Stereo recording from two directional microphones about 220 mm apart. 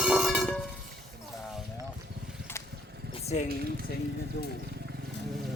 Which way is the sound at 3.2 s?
30° left (ahead or behind).